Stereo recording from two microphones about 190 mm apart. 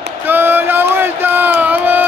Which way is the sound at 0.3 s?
10° right (ahead or behind).